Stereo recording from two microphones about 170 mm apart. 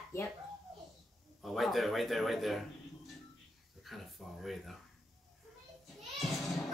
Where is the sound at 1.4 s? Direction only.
Centre (ahead or behind).